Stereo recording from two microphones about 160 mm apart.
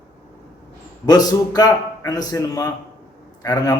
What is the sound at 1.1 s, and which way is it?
Mantra, 25° left (ahead or behind).